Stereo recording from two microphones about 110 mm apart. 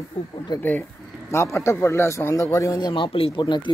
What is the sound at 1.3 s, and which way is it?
Speech, 25° left (ahead or behind).